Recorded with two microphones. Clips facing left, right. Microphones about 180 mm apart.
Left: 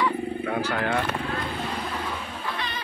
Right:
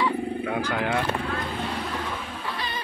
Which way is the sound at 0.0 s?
10° right (ahead or behind).